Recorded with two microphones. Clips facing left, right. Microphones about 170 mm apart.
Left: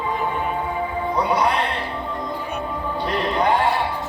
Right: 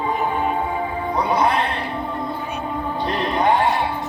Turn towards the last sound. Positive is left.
turn(degrees=-20)  # may be behind; listen again after turning